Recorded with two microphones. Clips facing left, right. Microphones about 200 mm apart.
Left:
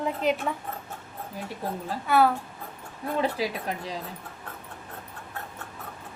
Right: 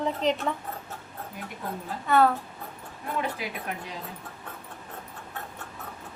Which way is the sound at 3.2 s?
30° left (ahead or behind).